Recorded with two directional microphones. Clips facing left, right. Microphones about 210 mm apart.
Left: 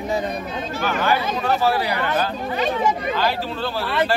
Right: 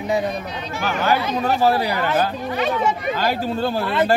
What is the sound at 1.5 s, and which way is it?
Speech, 40° right (ahead or behind).